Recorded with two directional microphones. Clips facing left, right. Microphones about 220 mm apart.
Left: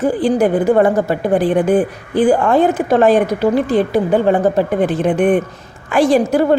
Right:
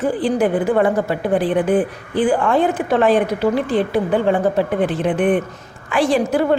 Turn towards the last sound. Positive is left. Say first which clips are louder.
# left 4 dB
turn(degrees=40)  # may be behind; listen again after turning